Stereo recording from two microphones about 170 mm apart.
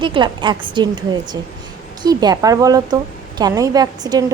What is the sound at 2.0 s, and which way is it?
A woman's voice, 20° right (ahead or behind).